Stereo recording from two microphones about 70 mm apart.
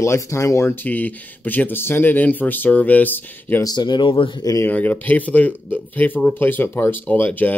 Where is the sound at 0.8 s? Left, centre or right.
Left.